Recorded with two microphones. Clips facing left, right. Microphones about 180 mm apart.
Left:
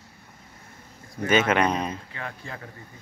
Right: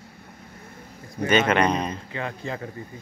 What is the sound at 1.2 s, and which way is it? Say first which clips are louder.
Speech: right 1 dB; 5° left (ahead or behind).